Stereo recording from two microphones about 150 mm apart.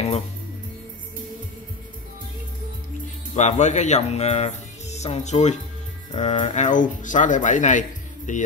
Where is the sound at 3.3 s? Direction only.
50° left (ahead or behind).